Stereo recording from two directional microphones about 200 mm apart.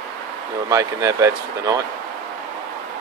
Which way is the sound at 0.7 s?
15° right (ahead or behind).